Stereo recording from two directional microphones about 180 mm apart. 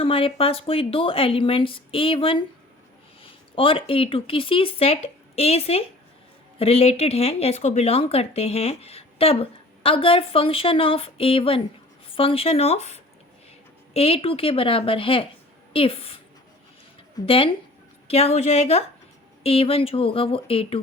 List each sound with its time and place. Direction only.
0.0 s speech: 30° left (ahead or behind)